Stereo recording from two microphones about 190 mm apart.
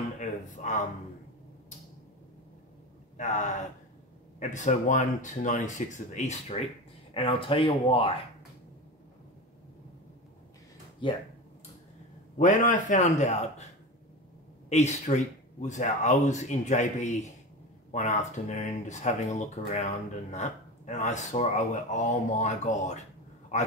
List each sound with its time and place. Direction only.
0.2 s a sound: 40° left (ahead or behind)
3.2 s speech: 40° left (ahead or behind)
11.0 s speech: 25° left (ahead or behind)
12.4 s speech: 40° left (ahead or behind)
14.7 s speech: 35° left (ahead or behind)